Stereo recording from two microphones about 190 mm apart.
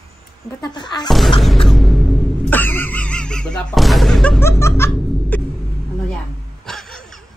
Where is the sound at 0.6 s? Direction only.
20° left (ahead or behind).